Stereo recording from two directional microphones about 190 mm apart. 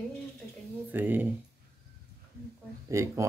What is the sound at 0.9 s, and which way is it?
Speech, 10° right (ahead or behind).